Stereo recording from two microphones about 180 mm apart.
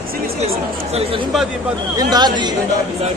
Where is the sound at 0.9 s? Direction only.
35° right (ahead or behind).